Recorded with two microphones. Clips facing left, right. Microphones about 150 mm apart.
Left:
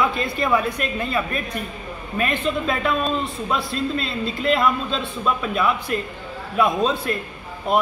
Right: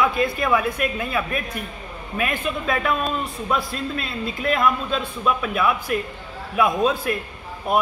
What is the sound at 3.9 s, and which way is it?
A man's voice, 5° right (ahead or behind).